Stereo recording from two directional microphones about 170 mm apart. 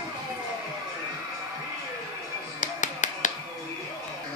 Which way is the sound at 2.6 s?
45° left (ahead or behind).